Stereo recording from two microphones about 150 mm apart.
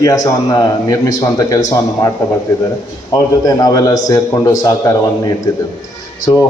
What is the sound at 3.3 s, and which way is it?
Speech, 25° left (ahead or behind).